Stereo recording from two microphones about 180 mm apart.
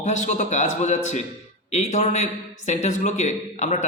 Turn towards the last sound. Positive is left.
turn(degrees=40)  # may be behind; listen again after turning